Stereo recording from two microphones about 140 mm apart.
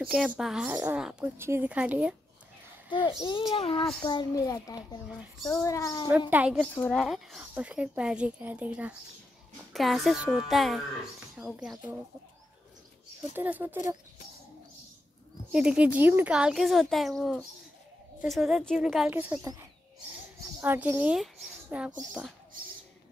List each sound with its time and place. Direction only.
0.0 s speech: 5° right (ahead or behind)
2.9 s a child's voice: 35° left (ahead or behind)
4.0 s a child's voice: 30° left (ahead or behind)
6.3 s speech: 10° right (ahead or behind)
6.7 s speech: 10° left (ahead or behind); by 8.9 s 10° right (ahead or behind)
9.7 s speech: centre (ahead or behind)
13.3 s speech: 15° right (ahead or behind)
15.5 s speech: 5° right (ahead or behind)
20.6 s speech: 15° right (ahead or behind)
21.2 s speech: centre (ahead or behind)